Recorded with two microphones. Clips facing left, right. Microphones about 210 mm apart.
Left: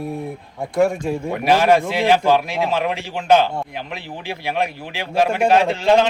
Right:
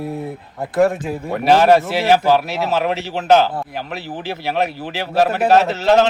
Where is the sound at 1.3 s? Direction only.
45° right (ahead or behind).